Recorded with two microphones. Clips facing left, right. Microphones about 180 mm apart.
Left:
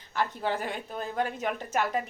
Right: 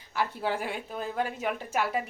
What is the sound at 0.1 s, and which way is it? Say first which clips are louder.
A woman's voice: even; 10° right (ahead or behind).